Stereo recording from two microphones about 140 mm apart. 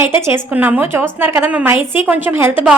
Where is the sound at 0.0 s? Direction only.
20° right (ahead or behind).